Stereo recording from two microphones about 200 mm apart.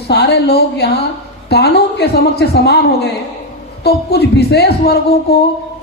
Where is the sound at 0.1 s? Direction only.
55° left (ahead or behind).